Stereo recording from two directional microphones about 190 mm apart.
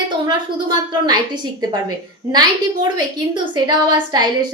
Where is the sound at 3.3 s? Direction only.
25° right (ahead or behind).